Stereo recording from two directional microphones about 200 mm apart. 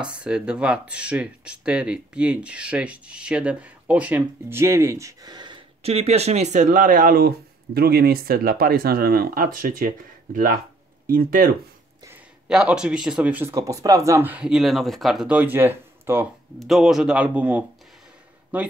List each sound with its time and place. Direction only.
0.0 s speech: 5° right (ahead or behind); by 11.5 s 45° right (ahead or behind)
12.1 s a man's voice: 5° right (ahead or behind)